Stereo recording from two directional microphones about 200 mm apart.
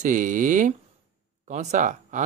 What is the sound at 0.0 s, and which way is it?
Speech, 40° right (ahead or behind).